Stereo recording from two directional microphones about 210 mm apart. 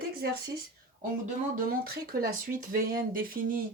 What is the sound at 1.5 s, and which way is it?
Speech, 45° right (ahead or behind).